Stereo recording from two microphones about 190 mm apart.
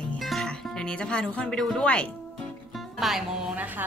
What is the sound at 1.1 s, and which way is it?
Speech, 5° left (ahead or behind).